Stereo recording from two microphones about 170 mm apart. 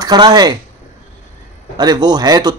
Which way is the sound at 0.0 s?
25° right (ahead or behind).